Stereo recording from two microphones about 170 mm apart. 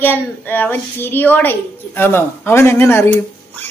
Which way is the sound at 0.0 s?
10° left (ahead or behind).